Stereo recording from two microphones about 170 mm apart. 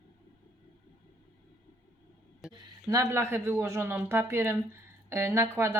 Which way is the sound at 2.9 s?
15° right (ahead or behind).